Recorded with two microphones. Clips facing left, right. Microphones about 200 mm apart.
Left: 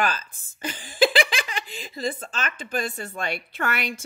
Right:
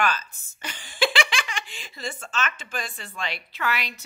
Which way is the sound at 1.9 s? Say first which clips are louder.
Left 3 dB; 35° left (ahead or behind).